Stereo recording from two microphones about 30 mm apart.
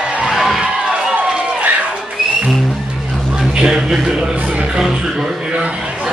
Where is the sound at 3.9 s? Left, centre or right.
Right.